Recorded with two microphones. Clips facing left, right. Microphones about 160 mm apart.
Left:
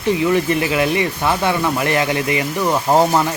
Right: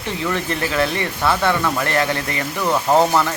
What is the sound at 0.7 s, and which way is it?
Speech, 15° left (ahead or behind).